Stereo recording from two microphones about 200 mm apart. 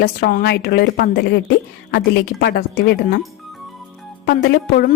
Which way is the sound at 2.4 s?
50° left (ahead or behind).